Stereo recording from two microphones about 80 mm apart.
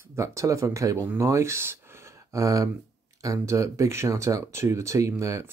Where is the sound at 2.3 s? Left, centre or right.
Right.